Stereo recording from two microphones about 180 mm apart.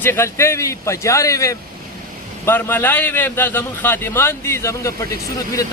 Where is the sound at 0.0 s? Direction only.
15° left (ahead or behind).